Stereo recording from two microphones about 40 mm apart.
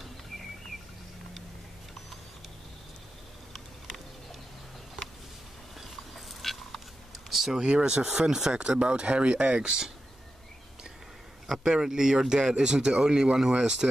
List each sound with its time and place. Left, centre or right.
5.8 s a sound: centre
7.6 s speech: right
11.4 s a man's voice: centre